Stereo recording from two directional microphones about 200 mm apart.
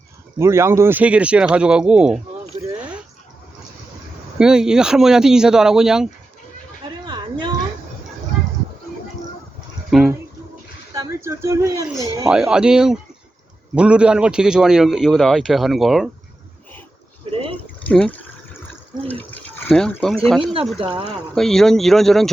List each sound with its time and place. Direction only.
0.3 s a man's voice: 15° right (ahead or behind)
4.4 s a man's voice: 5° right (ahead or behind)
7.0 s a sound: 20° right (ahead or behind)
9.9 s a man's voice: centre (ahead or behind)
10.9 s speech: 15° right (ahead or behind)
12.3 s a man's voice: 5° right (ahead or behind)
17.3 s a sound: 30° right (ahead or behind)
17.8 s water: 5° left (ahead or behind)
20.7 s speech: 25° right (ahead or behind)
21.3 s a man's voice: centre (ahead or behind)